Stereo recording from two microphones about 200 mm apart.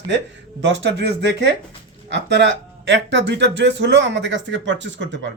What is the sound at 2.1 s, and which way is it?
Speech, 60° right (ahead or behind).